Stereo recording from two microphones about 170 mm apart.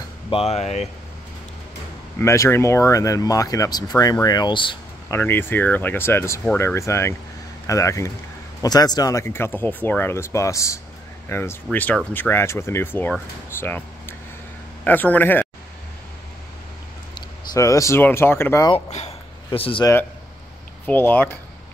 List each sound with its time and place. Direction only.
0.3 s speech: 40° left (ahead or behind)
2.1 s speech: 15° left (ahead or behind)
5.1 s speech: 10° left (ahead or behind)
17.1 s speech: 20° left (ahead or behind)
18.9 s a sound: 40° left (ahead or behind)
19.8 s speech: 15° left (ahead or behind)